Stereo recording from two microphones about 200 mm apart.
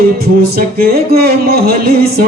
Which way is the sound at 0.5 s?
50° right (ahead or behind).